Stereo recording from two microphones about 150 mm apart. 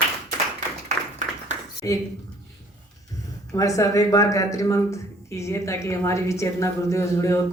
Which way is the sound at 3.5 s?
20° left (ahead or behind).